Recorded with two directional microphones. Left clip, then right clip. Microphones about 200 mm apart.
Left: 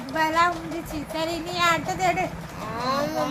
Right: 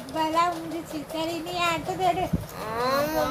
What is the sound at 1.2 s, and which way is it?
Speech, 25° left (ahead or behind).